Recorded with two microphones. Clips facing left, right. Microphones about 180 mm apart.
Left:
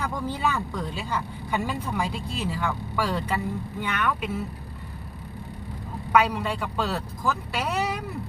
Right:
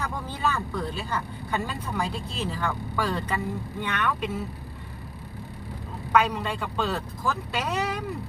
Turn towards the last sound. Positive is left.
turn(degrees=5)  # may be behind; listen again after turning